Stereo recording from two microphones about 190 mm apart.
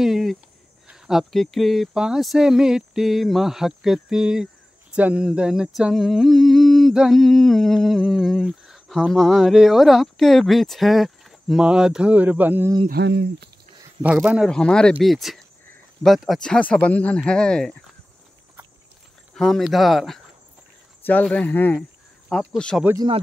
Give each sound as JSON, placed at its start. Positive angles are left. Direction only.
{"t": 0.0, "sound": "humming", "side_deg": 0}
{"t": 12.8, "sound": "speech", "side_deg": -60}
{"t": 14.0, "sound": "humming", "side_deg": -5}
{"t": 19.3, "sound": "humming", "side_deg": 0}
{"t": 21.0, "sound": "speech", "side_deg": 5}
{"t": 22.3, "sound": "humming", "side_deg": 5}